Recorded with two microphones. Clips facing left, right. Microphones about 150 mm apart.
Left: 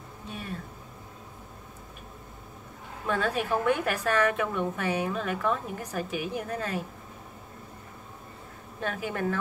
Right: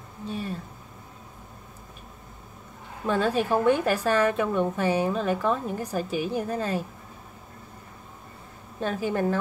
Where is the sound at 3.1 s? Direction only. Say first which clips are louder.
Right 4 dB; 30° right (ahead or behind).